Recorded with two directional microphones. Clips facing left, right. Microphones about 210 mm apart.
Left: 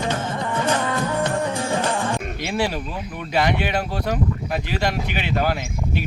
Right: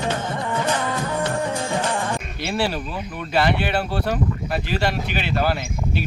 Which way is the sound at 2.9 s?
Centre (ahead or behind).